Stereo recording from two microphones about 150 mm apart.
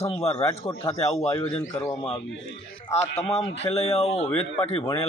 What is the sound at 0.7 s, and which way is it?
Speech, 20° left (ahead or behind).